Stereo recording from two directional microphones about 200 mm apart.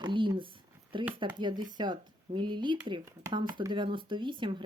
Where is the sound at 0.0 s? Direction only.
25° right (ahead or behind).